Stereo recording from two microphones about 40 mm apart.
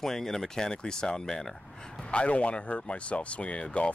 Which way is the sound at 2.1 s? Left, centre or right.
Left.